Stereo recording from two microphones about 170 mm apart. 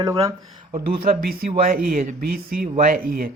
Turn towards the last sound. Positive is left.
turn(degrees=-55)  # may be behind; listen again after turning